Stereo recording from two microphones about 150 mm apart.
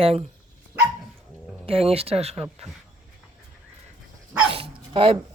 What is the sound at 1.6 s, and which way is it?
Speech, 40° right (ahead or behind).